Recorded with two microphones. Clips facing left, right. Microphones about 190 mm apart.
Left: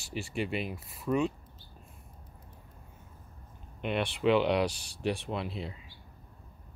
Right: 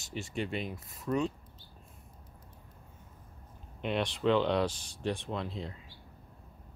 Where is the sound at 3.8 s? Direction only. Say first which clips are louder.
Left 1 dB; 5° left (ahead or behind).